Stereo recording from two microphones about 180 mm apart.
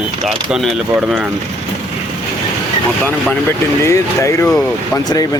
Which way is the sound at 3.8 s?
15° left (ahead or behind).